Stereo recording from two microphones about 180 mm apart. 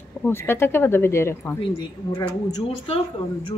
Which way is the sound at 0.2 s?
10° left (ahead or behind).